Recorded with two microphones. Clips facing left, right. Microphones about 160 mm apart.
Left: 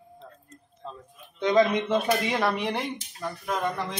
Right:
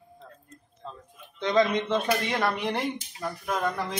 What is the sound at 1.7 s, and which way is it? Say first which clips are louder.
A man's voice: left 1 dB; 10° left (ahead or behind).